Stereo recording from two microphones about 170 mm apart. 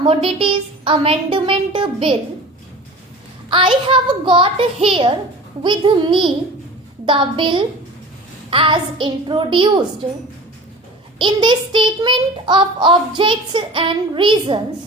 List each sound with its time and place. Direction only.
0.0 s a woman's voice: 30° right (ahead or behind)
3.5 s a woman's voice: 30° right (ahead or behind)
5.6 s child singing: 25° right (ahead or behind)
11.2 s child singing: 25° right (ahead or behind)